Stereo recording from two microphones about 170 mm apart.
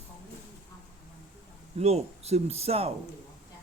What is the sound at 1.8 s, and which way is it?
A man's voice, 40° right (ahead or behind).